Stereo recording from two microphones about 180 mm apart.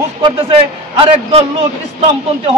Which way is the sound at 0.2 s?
30° right (ahead or behind).